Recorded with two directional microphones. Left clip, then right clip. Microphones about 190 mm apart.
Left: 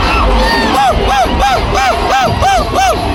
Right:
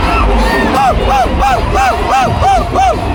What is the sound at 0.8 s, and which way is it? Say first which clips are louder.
Crowd: right 1 dB; centre (ahead or behind).